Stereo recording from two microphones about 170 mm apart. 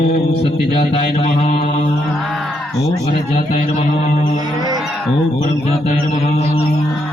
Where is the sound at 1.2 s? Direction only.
60° left (ahead or behind).